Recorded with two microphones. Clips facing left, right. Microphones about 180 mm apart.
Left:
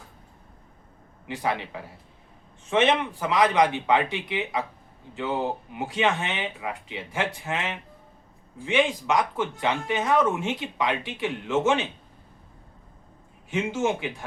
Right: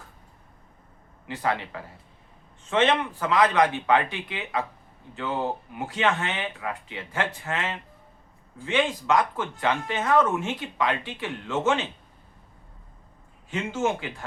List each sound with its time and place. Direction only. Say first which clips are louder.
1.4 s speech: right 1 dB; 15° left (ahead or behind)
13.5 s speech: left 1 dB; 15° left (ahead or behind)